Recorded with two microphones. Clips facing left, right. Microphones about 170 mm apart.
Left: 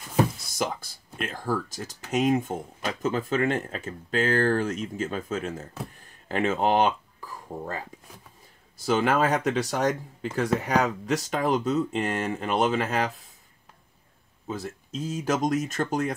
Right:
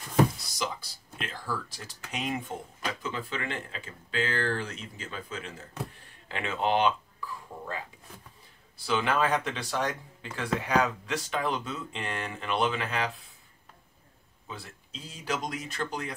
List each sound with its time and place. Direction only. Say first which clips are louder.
0.5 s a sound: left 5 dB; 50° left (ahead or behind)
1.2 s speech: left 7 dB; 45° left (ahead or behind)
14.5 s speech: left 10 dB; 45° left (ahead or behind)